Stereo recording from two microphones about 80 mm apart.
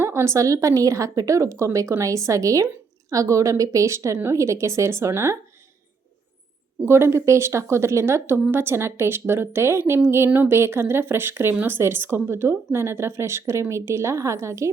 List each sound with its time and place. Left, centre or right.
0.0 s a woman's voice: right
6.8 s speech: right